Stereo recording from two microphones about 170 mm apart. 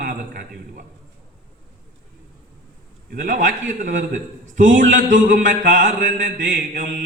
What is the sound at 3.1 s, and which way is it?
Mantra, 50° right (ahead or behind).